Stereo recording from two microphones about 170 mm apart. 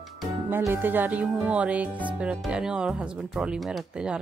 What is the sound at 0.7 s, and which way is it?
Speech, 10° right (ahead or behind).